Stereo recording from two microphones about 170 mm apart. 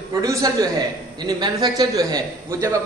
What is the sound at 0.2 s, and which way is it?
A man's voice, 20° right (ahead or behind).